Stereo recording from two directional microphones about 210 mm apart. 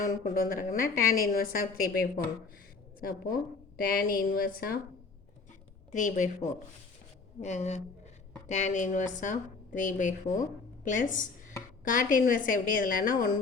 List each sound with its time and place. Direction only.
0.0 s a woman's voice: 40° left (ahead or behind)
3.8 s a woman's voice: 45° left (ahead or behind)
5.9 s a woman's voice: 35° left (ahead or behind)